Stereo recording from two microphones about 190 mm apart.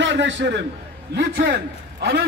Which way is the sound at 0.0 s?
70° right (ahead or behind).